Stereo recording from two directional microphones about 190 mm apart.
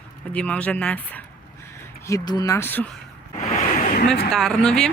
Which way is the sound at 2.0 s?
20° left (ahead or behind).